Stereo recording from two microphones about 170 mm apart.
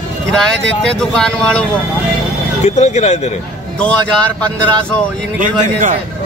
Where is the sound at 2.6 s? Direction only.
40° left (ahead or behind).